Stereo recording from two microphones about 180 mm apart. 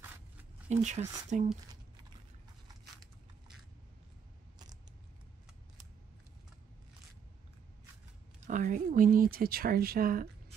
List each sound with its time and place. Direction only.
0.7 s speech: 40° right (ahead or behind)
8.4 s speech: 45° right (ahead or behind)